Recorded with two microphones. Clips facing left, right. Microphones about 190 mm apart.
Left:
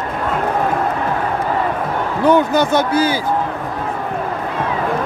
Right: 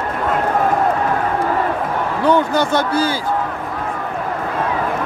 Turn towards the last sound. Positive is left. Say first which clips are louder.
# left 2 dB
turn(degrees=15)  # may be behind; listen again after turning